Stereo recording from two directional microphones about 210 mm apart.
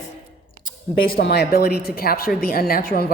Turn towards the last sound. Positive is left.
turn(degrees=45)  # may be behind; listen again after turning